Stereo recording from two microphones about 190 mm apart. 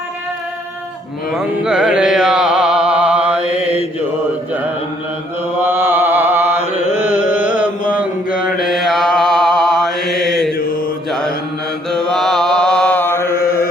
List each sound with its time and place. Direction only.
1.3 s music: 5° right (ahead or behind)
5.6 s chant: 10° right (ahead or behind)
7.0 s carnatic music: 10° right (ahead or behind)
8.5 s mantra: centre (ahead or behind)
11.9 s mantra: 5° left (ahead or behind)
13.3 s chant: 50° left (ahead or behind)